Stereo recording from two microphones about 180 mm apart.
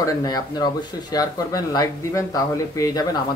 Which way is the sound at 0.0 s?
20° left (ahead or behind).